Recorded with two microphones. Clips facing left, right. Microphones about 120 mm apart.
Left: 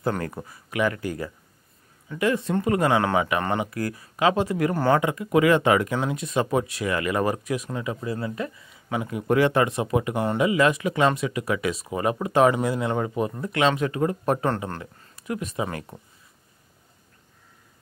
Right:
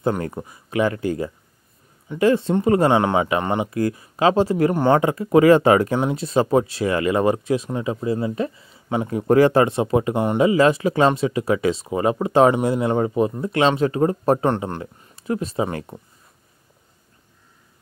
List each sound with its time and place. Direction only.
0.0 s speech: 20° right (ahead or behind)